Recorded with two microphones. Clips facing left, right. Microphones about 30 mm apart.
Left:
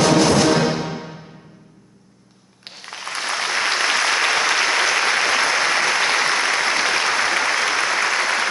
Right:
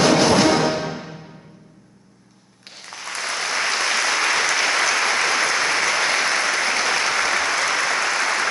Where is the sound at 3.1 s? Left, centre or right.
Left.